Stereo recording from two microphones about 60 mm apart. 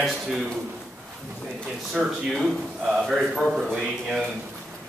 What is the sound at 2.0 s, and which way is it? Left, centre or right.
A man's voice, centre.